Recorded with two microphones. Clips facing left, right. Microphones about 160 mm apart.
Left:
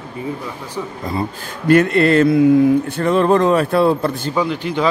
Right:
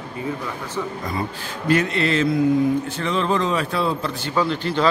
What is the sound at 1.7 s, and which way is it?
Mantra, 55° left (ahead or behind).